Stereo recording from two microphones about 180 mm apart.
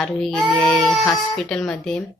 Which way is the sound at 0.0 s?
Centre (ahead or behind).